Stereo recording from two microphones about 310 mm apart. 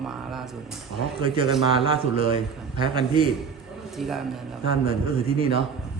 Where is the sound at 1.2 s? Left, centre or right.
Centre.